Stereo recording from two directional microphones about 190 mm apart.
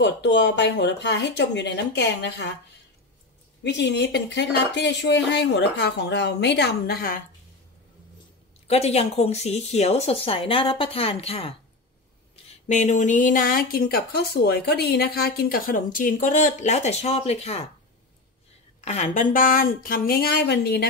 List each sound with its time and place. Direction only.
0.0 s speech: 65° left (ahead or behind)
3.6 s speech: 65° left (ahead or behind); by 7.2 s 50° left (ahead or behind)
8.6 s a woman's voice: 35° left (ahead or behind)
12.6 s speech: 40° left (ahead or behind)
18.9 s speech: 35° left (ahead or behind); by 20.8 s 60° left (ahead or behind)